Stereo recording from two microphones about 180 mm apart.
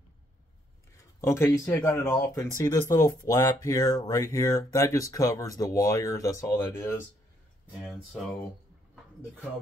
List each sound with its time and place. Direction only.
0.9 s speech: 15° left (ahead or behind)
7.8 s speech: centre (ahead or behind)